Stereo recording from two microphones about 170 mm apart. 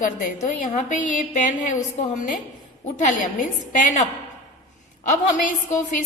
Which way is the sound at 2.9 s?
45° left (ahead or behind).